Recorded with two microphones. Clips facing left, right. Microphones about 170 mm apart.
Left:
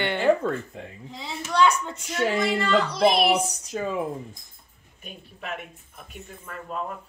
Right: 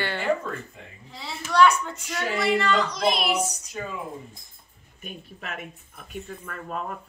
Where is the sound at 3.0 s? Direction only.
60° left (ahead or behind).